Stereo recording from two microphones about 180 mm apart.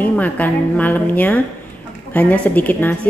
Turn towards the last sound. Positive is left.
turn(degrees=10)  # may be behind; listen again after turning